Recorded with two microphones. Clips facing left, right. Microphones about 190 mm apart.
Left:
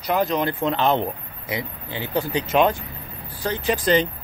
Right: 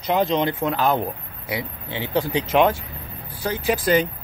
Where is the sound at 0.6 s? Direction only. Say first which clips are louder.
Even; 5° right (ahead or behind).